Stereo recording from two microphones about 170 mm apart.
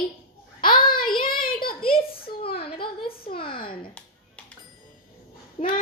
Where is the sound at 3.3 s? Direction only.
30° left (ahead or behind).